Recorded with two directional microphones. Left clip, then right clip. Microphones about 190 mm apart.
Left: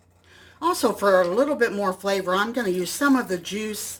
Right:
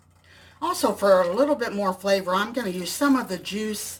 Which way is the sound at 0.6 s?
15° left (ahead or behind).